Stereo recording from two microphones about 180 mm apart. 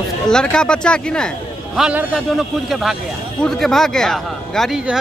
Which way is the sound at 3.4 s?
Centre (ahead or behind).